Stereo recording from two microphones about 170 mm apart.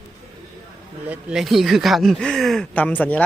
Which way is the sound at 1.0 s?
5° right (ahead or behind).